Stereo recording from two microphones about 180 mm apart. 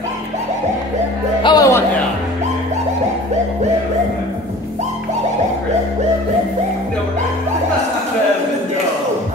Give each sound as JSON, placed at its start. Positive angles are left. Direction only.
{"t": 1.4, "sound": "music", "side_deg": 20}